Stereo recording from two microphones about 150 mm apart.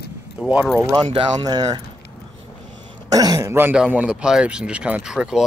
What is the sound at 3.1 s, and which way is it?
Speech, 25° right (ahead or behind).